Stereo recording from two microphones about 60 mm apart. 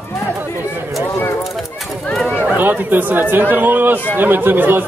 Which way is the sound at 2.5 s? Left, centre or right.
Right.